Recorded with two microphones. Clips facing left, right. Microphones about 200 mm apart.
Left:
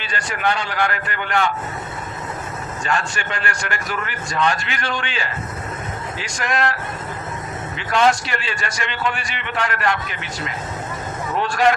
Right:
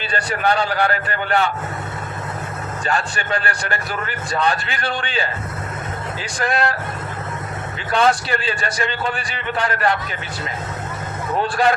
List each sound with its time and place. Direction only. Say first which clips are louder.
0.1 s a man's voice: right 2 dB; 35° right (ahead or behind)
2.8 s a man's voice: right 1 dB; 35° right (ahead or behind)
6.4 s a man's voice: right 1 dB; 35° right (ahead or behind)
7.9 s a man's voice: even; 35° right (ahead or behind)
11.4 s a man's voice: left 1 dB; 35° right (ahead or behind)